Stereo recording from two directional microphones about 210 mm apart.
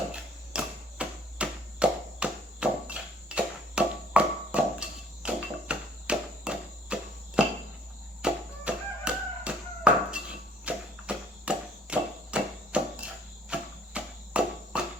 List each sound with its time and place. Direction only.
0.1 s chop: 5° right (ahead or behind)
8.2 s tap: 5° right (ahead or behind)
13.5 s cricket: 5° right (ahead or behind)